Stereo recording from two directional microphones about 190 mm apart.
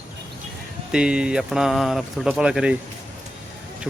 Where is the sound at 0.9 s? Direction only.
5° right (ahead or behind).